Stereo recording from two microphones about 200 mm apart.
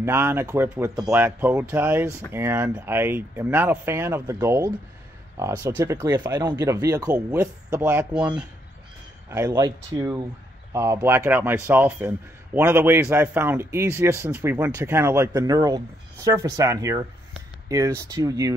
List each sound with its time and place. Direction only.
0.0 s speech: 10° right (ahead or behind)
9.5 s speech: 20° right (ahead or behind)